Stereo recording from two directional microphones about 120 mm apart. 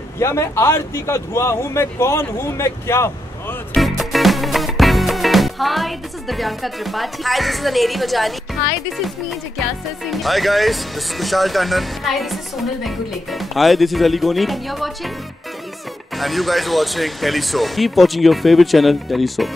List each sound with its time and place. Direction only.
0.2 s speech: 25° left (ahead or behind)
3.7 s music: centre (ahead or behind)
8.9 s speech: centre (ahead or behind)
16.2 s speech: centre (ahead or behind)